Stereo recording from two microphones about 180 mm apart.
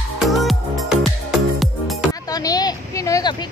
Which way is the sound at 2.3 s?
20° left (ahead or behind).